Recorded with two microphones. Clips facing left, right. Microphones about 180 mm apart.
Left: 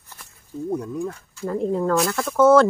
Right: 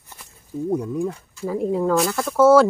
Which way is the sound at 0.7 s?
15° right (ahead or behind).